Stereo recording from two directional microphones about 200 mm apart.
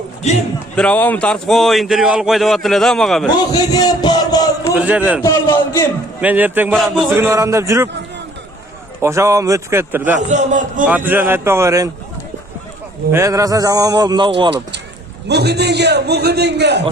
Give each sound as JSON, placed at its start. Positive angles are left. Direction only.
{"t": 0.8, "sound": "a man's voice", "side_deg": 5}
{"t": 3.7, "sound": "a sound", "side_deg": 20}
{"t": 4.7, "sound": "a man's voice", "side_deg": -5}
{"t": 5.2, "sound": "a man's voice", "side_deg": 15}
{"t": 6.2, "sound": "a man's voice", "side_deg": -10}
{"t": 7.1, "sound": "a man's voice", "side_deg": -15}
{"t": 9.0, "sound": "a man's voice", "side_deg": -15}
{"t": 10.2, "sound": "a man's voice", "side_deg": -35}
{"t": 10.8, "sound": "a man's voice", "side_deg": -10}
{"t": 13.1, "sound": "a man's voice", "side_deg": -15}
{"t": 15.3, "sound": "a man's voice", "side_deg": -55}